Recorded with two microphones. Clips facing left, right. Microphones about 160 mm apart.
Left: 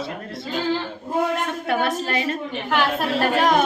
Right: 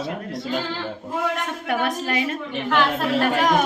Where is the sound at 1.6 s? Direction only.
15° right (ahead or behind).